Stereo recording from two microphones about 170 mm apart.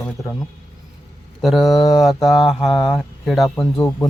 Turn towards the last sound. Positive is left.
turn(degrees=15)  # may be behind; listen again after turning